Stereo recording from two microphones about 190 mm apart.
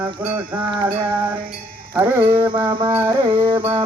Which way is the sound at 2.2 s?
25° right (ahead or behind).